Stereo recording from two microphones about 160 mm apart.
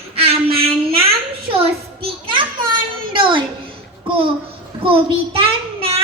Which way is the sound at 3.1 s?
30° right (ahead or behind).